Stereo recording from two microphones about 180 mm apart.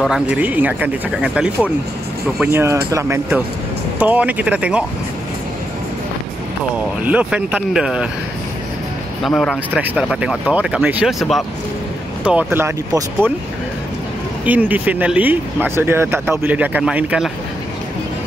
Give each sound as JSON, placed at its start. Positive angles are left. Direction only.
{"t": 0.0, "sound": "speech", "side_deg": -5}
{"t": 7.1, "sound": "speech", "side_deg": -10}
{"t": 9.2, "sound": "speech", "side_deg": 5}
{"t": 14.4, "sound": "speech", "side_deg": -10}